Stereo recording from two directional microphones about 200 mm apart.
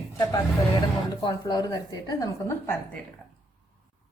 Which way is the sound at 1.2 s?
20° left (ahead or behind).